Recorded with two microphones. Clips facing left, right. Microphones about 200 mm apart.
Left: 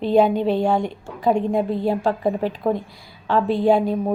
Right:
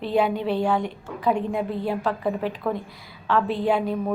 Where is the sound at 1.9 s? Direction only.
25° left (ahead or behind).